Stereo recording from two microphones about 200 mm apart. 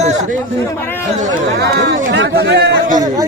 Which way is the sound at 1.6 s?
60° right (ahead or behind).